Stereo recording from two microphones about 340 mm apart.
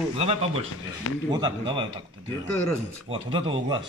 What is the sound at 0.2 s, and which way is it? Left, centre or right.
Speech, centre.